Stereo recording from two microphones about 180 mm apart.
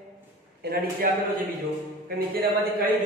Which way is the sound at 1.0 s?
50° right (ahead or behind).